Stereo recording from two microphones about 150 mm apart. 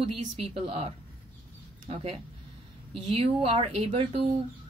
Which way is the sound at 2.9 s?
40° right (ahead or behind).